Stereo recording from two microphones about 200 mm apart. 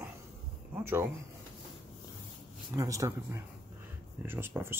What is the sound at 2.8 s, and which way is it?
Speech, 15° right (ahead or behind).